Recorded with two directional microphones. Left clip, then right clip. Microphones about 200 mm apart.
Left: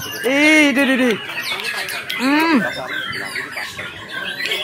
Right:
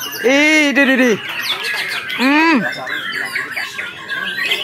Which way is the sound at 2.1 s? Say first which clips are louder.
Right 3 dB; 25° right (ahead or behind).